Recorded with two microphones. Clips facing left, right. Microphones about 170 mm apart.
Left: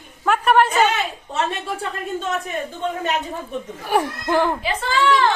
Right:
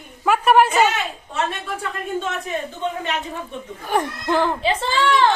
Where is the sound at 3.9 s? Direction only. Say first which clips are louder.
Left 1 dB; 10° left (ahead or behind).